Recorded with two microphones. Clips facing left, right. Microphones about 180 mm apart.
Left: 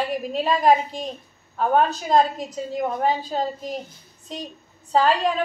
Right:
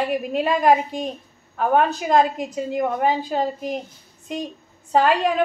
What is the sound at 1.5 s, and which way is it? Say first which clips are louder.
A woman's voice: right 1 dB; 60° right (ahead or behind).